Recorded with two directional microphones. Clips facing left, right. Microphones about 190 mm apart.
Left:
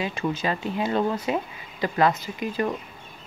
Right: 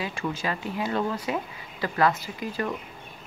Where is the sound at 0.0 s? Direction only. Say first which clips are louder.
Left 3 dB; 20° left (ahead or behind).